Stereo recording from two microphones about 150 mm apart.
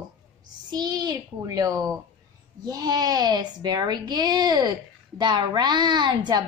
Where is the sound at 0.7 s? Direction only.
25° right (ahead or behind).